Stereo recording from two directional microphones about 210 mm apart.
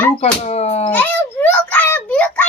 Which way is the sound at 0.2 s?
30° left (ahead or behind).